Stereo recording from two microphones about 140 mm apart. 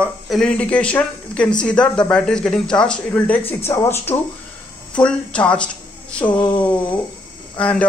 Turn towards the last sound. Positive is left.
turn(degrees=10)  # may be behind; listen again after turning